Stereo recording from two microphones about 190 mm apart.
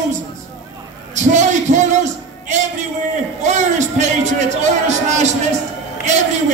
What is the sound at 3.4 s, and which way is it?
Music, 40° right (ahead or behind).